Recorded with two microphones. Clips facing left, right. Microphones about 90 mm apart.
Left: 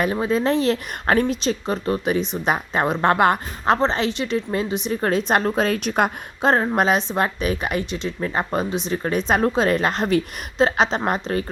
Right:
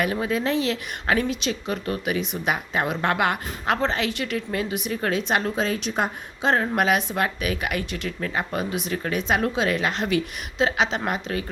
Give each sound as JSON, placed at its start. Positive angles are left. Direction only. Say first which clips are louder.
{"t": 0.0, "sound": "a woman's voice", "louder": "left 4 dB", "side_deg": 30}
{"t": 6.4, "sound": "a woman's voice", "louder": "left 3 dB", "side_deg": 35}
{"t": 8.3, "sound": "a woman's voice", "louder": "left 4 dB", "side_deg": 35}